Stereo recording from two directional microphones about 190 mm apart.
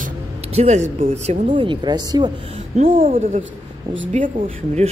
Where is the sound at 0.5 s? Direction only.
35° right (ahead or behind).